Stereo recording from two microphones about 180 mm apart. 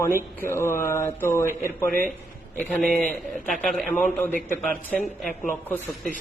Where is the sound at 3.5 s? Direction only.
Centre (ahead or behind).